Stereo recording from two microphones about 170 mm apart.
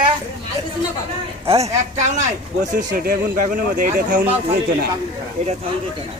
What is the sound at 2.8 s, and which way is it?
Speech, 50° right (ahead or behind).